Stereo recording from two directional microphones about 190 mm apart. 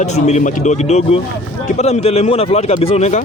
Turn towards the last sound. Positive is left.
turn(degrees=35)  # may be behind; listen again after turning